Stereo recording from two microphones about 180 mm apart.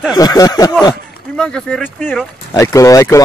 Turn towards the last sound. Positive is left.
turn(degrees=20)  # may be behind; listen again after turning